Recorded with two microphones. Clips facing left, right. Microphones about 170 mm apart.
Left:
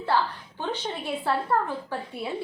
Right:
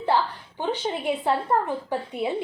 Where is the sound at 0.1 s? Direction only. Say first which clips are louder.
Right 1 dB; 20° right (ahead or behind).